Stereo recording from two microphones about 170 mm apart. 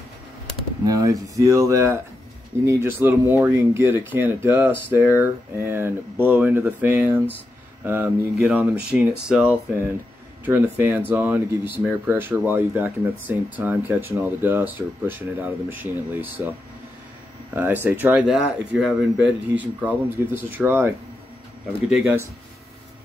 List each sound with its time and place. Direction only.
0.8 s speech: 20° right (ahead or behind)
17.6 s speech: 10° right (ahead or behind)
21.9 s speech: 10° right (ahead or behind)